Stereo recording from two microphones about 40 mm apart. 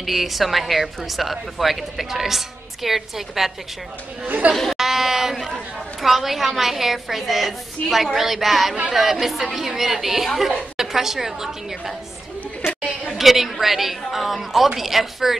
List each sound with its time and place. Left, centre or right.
0.0 s a woman's voice: centre
4.2 s speech: right
4.7 s a woman's voice: centre
13.2 s a woman's voice: centre